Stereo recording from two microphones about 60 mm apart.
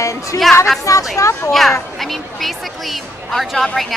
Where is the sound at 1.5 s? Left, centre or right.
Centre.